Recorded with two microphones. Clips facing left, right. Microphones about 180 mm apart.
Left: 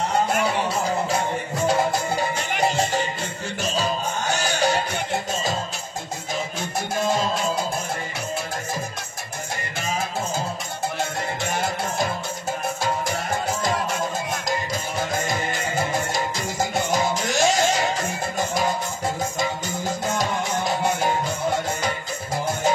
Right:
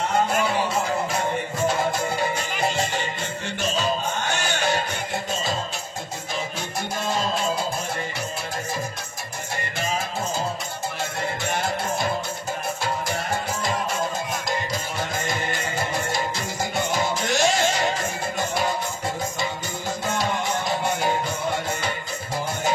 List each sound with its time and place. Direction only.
3.7 s music: 40° left (ahead or behind)
16.1 s music: 45° left (ahead or behind)